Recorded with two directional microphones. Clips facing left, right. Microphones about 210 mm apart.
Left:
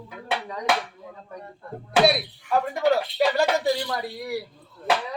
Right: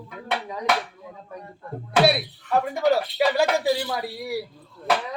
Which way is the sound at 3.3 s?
5° right (ahead or behind).